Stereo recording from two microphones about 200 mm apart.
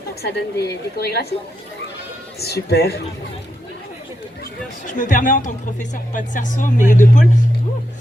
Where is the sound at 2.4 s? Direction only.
55° left (ahead or behind).